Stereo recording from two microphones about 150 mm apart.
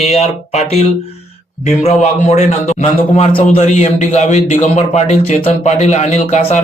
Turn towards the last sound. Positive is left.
turn(degrees=50)  # may be behind; listen again after turning